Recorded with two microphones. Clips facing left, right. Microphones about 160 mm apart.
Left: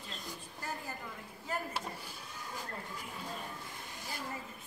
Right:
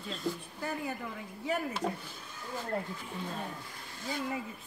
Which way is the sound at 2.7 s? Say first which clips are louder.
Right 10 dB; 75° right (ahead or behind).